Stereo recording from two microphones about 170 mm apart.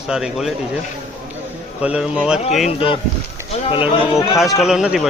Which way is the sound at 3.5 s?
30° left (ahead or behind).